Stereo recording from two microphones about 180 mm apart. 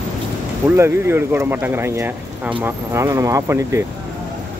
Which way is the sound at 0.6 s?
15° right (ahead or behind).